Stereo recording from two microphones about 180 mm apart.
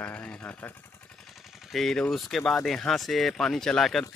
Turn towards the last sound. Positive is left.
turn(degrees=0)  # may be behind; listen again after turning